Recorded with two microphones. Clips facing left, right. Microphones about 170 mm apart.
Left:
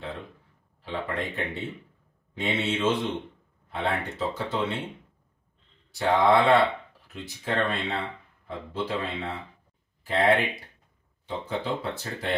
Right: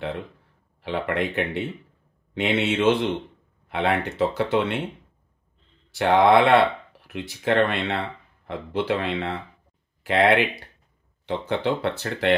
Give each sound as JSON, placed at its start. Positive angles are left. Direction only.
{"t": 0.8, "sound": "speech", "side_deg": -75}
{"t": 5.9, "sound": "speech", "side_deg": -75}